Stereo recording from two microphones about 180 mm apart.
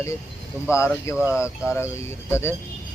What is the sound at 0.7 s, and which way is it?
Speech, 15° left (ahead or behind).